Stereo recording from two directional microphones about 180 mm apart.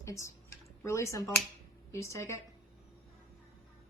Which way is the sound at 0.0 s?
15° left (ahead or behind).